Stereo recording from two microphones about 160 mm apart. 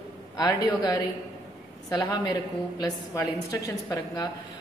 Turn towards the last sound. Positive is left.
turn(degrees=25)  # may be behind; listen again after turning